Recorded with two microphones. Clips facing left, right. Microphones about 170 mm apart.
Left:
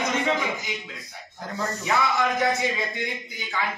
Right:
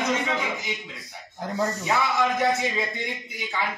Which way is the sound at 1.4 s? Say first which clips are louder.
Right 4 dB; 20° right (ahead or behind).